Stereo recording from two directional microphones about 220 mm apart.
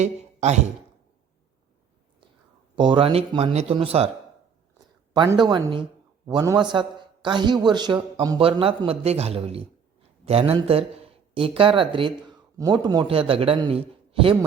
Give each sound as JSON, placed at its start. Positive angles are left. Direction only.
{"t": 0.0, "sound": "a sound", "side_deg": -30}
{"t": 2.7, "sound": "a man's voice", "side_deg": -20}
{"t": 5.1, "sound": "a man's voice", "side_deg": -20}